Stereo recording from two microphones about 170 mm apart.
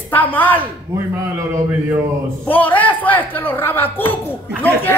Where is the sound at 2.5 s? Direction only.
10° left (ahead or behind).